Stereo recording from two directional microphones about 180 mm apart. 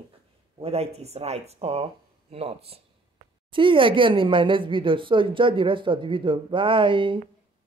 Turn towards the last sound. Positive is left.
turn(degrees=-25)  # may be behind; listen again after turning